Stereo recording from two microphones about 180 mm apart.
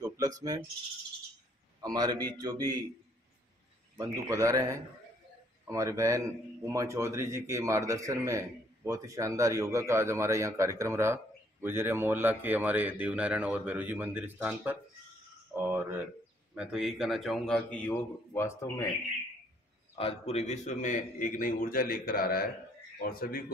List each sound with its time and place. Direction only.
0.0 s a sound: 20° right (ahead or behind)
1.8 s a man's voice: 20° right (ahead or behind)
4.0 s a man's voice: 15° right (ahead or behind)
15.5 s a sound: 10° right (ahead or behind)
16.5 s a man's voice: 5° right (ahead or behind); by 18.9 s 15° left (ahead or behind)
20.0 s a man's voice: 35° left (ahead or behind); by 23.4 s 55° left (ahead or behind)